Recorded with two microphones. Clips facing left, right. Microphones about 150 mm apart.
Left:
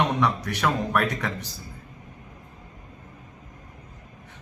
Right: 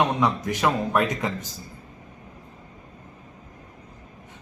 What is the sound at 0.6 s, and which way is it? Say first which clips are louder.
Speech: right 2 dB; 15° right (ahead or behind).